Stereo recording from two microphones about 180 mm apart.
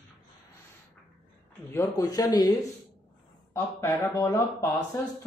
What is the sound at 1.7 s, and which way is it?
Speech, 15° left (ahead or behind).